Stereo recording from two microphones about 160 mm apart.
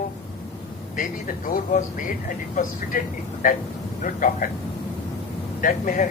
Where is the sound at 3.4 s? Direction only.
55° left (ahead or behind).